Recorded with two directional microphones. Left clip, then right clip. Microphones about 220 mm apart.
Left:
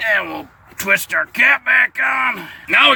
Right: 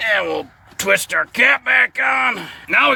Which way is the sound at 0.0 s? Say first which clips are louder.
Even; 45° right (ahead or behind).